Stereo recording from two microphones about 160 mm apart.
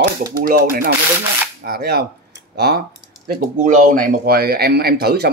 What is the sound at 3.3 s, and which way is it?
Speech, 55° right (ahead or behind).